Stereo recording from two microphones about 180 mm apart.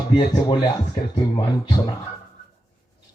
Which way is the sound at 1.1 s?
20° left (ahead or behind).